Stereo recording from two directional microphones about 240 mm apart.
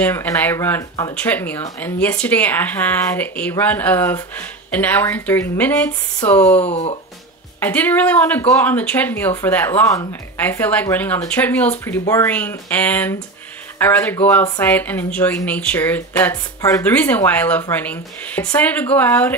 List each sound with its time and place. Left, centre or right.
0.0 s speech: centre
6.6 s speech: left
7.6 s speech: centre